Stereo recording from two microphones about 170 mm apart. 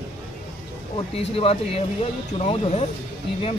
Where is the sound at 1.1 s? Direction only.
35° left (ahead or behind).